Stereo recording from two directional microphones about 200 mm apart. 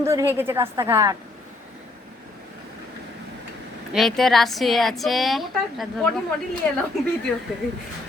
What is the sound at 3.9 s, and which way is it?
A woman's voice, centre (ahead or behind).